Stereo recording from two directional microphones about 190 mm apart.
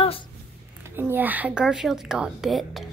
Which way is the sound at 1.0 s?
10° right (ahead or behind).